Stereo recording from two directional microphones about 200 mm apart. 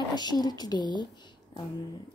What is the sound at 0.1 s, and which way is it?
Speech, 20° left (ahead or behind).